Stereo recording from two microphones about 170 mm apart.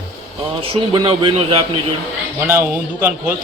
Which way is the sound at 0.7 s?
30° right (ahead or behind).